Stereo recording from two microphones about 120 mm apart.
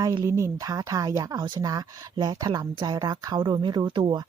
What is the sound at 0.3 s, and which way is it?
Speech, 25° right (ahead or behind).